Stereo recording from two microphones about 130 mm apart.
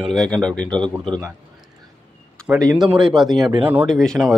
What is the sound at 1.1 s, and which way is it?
Speech, 25° right (ahead or behind).